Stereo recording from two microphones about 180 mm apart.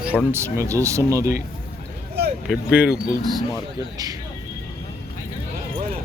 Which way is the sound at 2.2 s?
65° right (ahead or behind).